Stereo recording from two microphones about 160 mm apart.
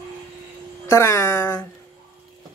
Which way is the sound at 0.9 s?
15° left (ahead or behind).